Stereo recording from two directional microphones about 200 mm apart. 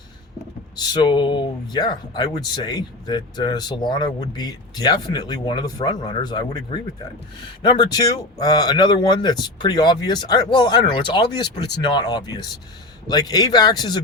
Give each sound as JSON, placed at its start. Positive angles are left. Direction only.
{"t": 0.8, "sound": "speech", "side_deg": 20}